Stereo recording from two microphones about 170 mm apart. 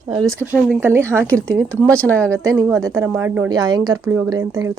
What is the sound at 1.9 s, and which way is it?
Speech, 10° left (ahead or behind).